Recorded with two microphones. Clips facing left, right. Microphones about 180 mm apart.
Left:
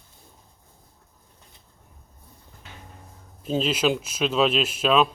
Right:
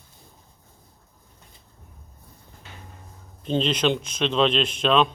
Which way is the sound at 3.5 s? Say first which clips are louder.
Even; 5° left (ahead or behind).